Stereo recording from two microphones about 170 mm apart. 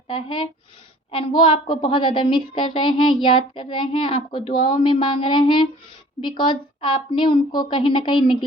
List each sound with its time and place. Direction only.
0.1 s a woman's voice: 30° left (ahead or behind)